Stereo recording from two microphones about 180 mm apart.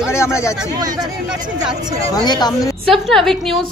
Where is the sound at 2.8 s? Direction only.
Centre (ahead or behind).